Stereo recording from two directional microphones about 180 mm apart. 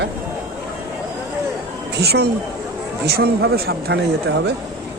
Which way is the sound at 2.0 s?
65° right (ahead or behind).